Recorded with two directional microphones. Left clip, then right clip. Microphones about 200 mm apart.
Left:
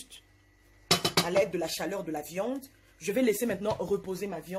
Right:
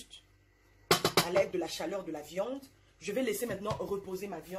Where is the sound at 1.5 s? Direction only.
55° left (ahead or behind).